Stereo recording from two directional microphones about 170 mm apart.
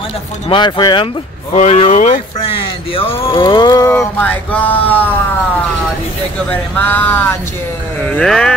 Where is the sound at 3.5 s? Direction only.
25° left (ahead or behind).